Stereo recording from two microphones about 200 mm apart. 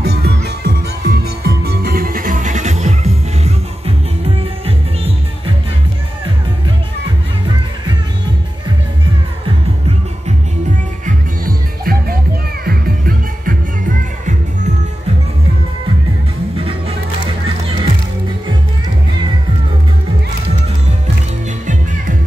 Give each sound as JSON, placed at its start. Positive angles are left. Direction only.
{"t": 0.0, "sound": "music", "side_deg": -55}
{"t": 11.8, "sound": "music", "side_deg": -50}
{"t": 16.5, "sound": "music", "side_deg": -30}